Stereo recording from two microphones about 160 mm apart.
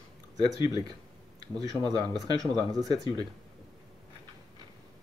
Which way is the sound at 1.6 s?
25° right (ahead or behind).